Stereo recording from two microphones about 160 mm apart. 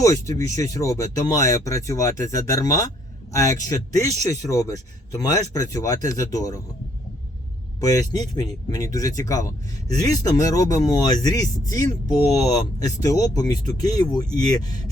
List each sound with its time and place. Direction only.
0.0 s speech: 20° left (ahead or behind)
7.8 s speech: 20° left (ahead or behind)